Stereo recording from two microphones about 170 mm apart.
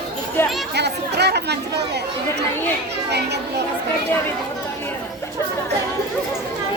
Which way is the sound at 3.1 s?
80° right.